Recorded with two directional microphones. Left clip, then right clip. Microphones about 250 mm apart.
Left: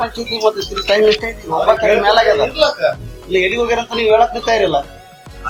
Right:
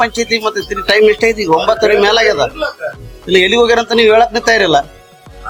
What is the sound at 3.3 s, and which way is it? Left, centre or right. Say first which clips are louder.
Speech: right 6 dB; right.